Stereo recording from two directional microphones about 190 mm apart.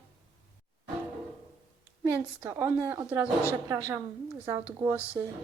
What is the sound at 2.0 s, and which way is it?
A woman's voice, 10° right (ahead or behind).